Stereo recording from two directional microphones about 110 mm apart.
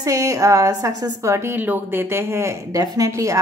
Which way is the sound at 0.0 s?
30° right (ahead or behind).